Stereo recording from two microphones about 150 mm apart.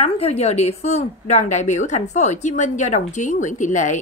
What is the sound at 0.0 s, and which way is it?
A woman's voice, 45° left (ahead or behind).